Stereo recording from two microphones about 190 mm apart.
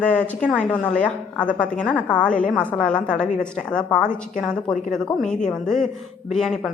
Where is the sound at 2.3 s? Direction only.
45° left (ahead or behind).